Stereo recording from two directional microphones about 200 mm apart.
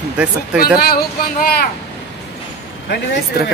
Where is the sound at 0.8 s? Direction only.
50° left (ahead or behind).